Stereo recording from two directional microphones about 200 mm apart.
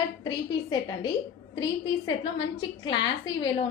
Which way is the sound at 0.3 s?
20° left (ahead or behind).